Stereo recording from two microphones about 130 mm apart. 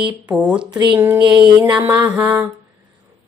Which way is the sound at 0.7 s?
35° right (ahead or behind).